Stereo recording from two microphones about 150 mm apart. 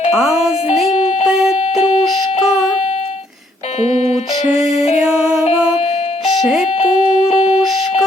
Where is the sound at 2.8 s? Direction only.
45° left (ahead or behind).